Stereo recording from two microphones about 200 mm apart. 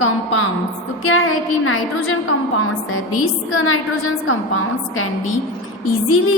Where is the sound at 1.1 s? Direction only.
90° left.